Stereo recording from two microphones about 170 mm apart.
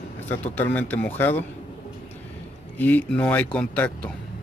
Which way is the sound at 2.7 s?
10° left (ahead or behind).